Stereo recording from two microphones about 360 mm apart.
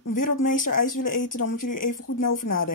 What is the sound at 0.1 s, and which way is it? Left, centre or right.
Speech, left.